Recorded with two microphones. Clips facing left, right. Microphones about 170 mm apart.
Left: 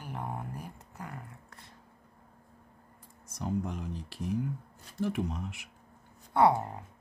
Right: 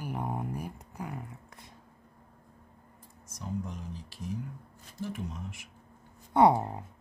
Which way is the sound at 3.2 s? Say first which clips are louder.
Left 4 dB; 60° left (ahead or behind).